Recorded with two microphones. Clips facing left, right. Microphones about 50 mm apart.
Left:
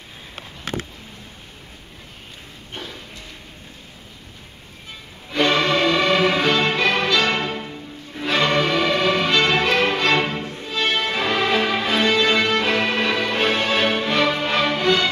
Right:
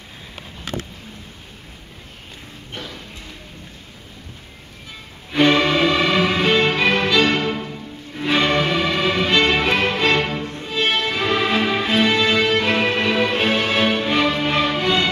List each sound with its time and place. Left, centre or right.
5.3 s music: centre
10.6 s music: centre
11.0 s music: centre